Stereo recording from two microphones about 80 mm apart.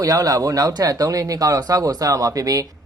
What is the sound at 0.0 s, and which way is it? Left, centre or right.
Speech, right.